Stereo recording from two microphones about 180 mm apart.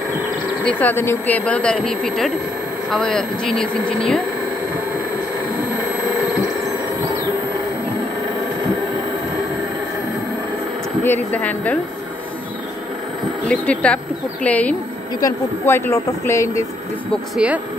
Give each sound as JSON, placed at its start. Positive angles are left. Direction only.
{"t": 0.7, "sound": "speech", "side_deg": 10}
{"t": 11.1, "sound": "speech", "side_deg": 10}
{"t": 13.5, "sound": "speech", "side_deg": 5}
{"t": 17.1, "sound": "speech", "side_deg": -5}